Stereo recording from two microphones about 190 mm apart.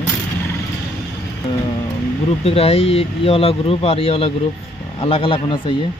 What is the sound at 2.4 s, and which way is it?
Speech, 30° left (ahead or behind).